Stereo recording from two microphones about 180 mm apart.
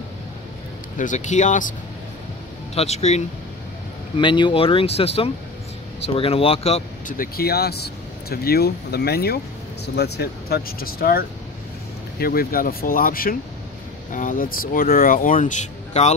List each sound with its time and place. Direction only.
0.9 s speech: 45° left (ahead or behind)
2.7 s speech: 35° left (ahead or behind)
4.2 s speech: 25° left (ahead or behind)
7.2 s speech: 60° left (ahead or behind); by 16.1 s 40° left (ahead or behind)